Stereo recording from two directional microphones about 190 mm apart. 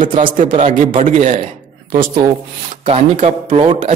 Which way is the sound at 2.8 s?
35° right (ahead or behind).